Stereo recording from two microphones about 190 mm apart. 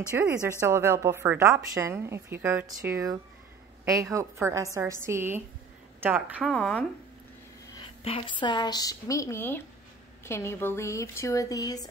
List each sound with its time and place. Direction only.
0.1 s a woman's voice: 15° right (ahead or behind)
6.5 s speech: 5° left (ahead or behind)
7.7 s a woman's voice: 30° left (ahead or behind)